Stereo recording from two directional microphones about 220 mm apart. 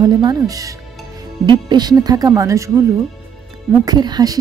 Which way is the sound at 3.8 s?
20° right (ahead or behind).